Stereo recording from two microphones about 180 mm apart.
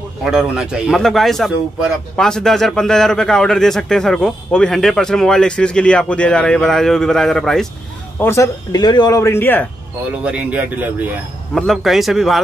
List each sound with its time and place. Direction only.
0.2 s a man's voice: 5° right (ahead or behind)
8.2 s speech: 15° left (ahead or behind)
10.2 s a man's voice: 5° right (ahead or behind)